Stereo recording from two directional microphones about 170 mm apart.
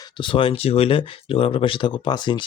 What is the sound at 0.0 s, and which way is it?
Speech, 30° left (ahead or behind).